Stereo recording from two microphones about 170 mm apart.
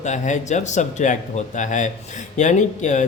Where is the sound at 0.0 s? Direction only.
45° left (ahead or behind).